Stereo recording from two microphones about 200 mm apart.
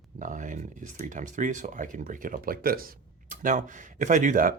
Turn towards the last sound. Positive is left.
turn(degrees=-45)  # may be behind; listen again after turning